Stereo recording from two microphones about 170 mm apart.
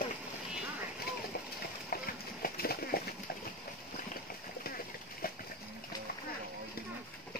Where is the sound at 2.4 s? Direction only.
65° left (ahead or behind).